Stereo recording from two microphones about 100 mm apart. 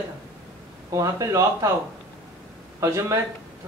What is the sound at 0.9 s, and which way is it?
Speech, 30° right (ahead or behind).